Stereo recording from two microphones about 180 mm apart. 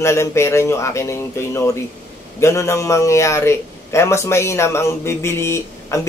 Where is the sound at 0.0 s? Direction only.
15° left (ahead or behind).